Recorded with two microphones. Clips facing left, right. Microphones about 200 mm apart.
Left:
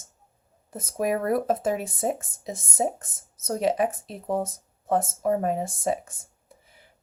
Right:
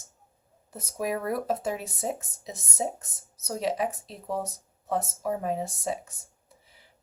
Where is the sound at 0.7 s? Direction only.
50° left (ahead or behind).